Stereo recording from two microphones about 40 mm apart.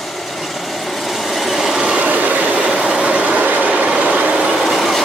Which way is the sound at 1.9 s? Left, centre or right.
Right.